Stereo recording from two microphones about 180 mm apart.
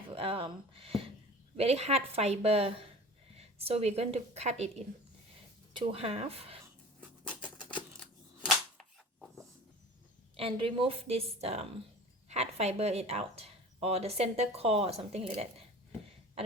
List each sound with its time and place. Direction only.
0.1 s a woman's voice: 30° right (ahead or behind)
5.7 s speech: 30° right (ahead or behind)
7.3 s scissors: 5° left (ahead or behind)
8.4 s cap gun: centre (ahead or behind)
10.3 s speech: 30° right (ahead or behind)